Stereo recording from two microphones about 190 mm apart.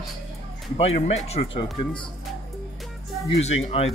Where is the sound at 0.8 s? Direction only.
35° left (ahead or behind).